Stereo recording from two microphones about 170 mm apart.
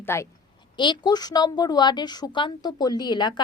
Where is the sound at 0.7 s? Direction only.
25° left (ahead or behind).